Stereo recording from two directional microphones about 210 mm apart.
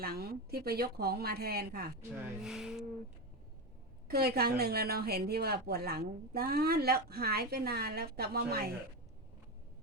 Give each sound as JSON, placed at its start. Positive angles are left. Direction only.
{"t": 0.0, "sound": "a woman's voice", "side_deg": -45}
{"t": 2.4, "sound": "speech", "side_deg": 0}
{"t": 4.1, "sound": "a woman's voice", "side_deg": -45}